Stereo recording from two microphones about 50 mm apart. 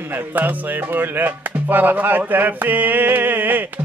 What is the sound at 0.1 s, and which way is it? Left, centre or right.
Speech, right.